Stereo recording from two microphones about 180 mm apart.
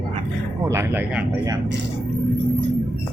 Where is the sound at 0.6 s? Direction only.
15° right (ahead or behind).